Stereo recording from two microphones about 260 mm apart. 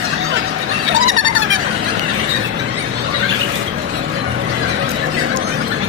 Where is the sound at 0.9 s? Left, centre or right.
Right.